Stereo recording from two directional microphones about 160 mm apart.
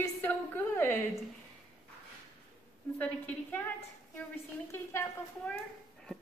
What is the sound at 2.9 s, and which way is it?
Speech, 10° left (ahead or behind).